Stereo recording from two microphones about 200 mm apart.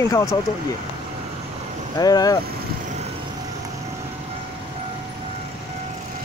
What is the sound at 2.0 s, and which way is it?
Speech, 20° left (ahead or behind).